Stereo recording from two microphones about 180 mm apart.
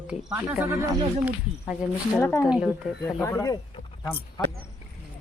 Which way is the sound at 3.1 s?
15° left (ahead or behind).